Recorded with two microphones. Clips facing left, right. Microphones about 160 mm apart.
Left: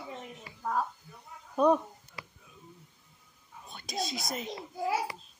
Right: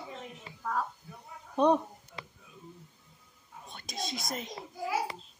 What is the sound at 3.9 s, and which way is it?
Speech, centre (ahead or behind).